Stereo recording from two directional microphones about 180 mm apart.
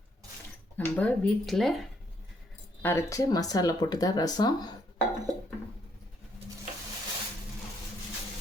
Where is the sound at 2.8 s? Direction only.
15° left (ahead or behind).